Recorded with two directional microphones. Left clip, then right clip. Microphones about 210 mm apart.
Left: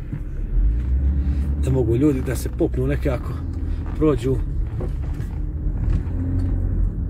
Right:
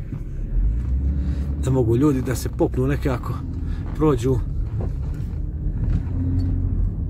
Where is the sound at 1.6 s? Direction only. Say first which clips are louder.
Even; 35° right (ahead or behind).